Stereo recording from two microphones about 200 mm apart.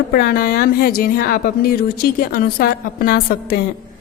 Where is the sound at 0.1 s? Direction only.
45° left (ahead or behind).